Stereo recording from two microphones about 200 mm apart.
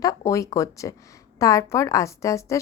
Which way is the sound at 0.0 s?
20° left (ahead or behind).